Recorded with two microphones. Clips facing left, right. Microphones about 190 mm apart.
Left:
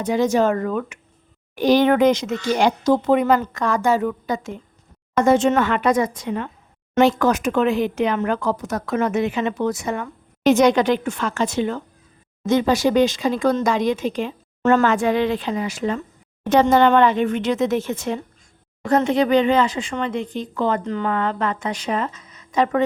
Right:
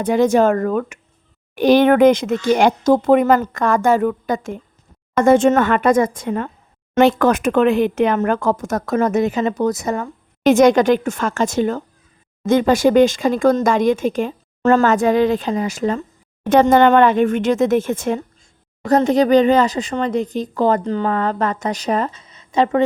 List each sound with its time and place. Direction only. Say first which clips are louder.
0.0 s speech: right 4 dB; 55° right (ahead or behind)
1.5 s speech: right 4 dB; 60° right (ahead or behind); by 16.0 s 40° right (ahead or behind)
16.5 s speech: right 3 dB; 50° right (ahead or behind)
18.9 s speech: right 4 dB; 40° right (ahead or behind)